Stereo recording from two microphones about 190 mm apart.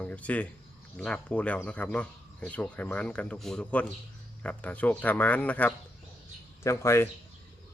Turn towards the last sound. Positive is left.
turn(degrees=15)  # may be behind; listen again after turning